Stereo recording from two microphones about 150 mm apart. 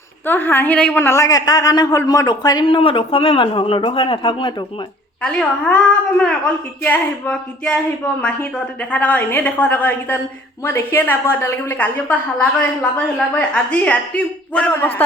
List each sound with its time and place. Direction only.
0.3 s a woman's voice: 10° left (ahead or behind); by 4.5 s 35° left (ahead or behind)
5.2 s a woman's voice: 5° left (ahead or behind)